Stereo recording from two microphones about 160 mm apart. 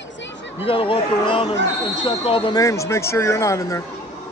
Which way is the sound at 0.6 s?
35° left (ahead or behind).